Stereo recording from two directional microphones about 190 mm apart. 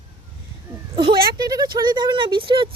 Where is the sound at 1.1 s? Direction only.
50° right (ahead or behind).